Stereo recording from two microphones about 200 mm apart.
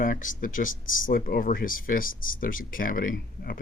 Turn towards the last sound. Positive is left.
turn(degrees=45)  # may be behind; listen again after turning